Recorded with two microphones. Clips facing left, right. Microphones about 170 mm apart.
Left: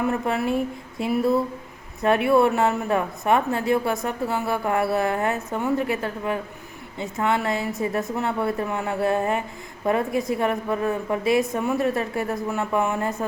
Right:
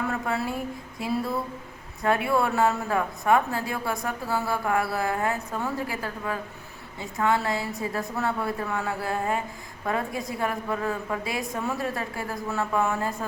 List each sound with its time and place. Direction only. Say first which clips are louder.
0.1 s a woman's voice: left 5 dB; 20° left (ahead or behind)